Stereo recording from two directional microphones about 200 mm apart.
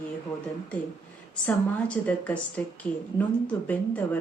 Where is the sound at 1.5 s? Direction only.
10° left (ahead or behind).